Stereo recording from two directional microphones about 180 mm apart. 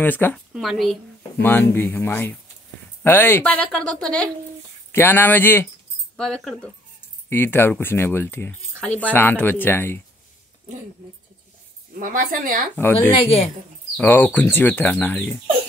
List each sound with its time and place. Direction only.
0.0 s speech: 10° left (ahead or behind)
0.5 s speech: centre (ahead or behind)
1.4 s speech: 10° left (ahead or behind)
11.9 s speech: 50° right (ahead or behind)
12.7 s speech: 10° left (ahead or behind)
13.2 s a woman's voice: 30° left (ahead or behind)
13.9 s speech: 10° left (ahead or behind)